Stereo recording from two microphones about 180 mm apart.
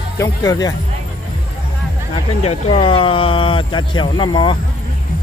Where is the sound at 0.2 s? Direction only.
20° left (ahead or behind).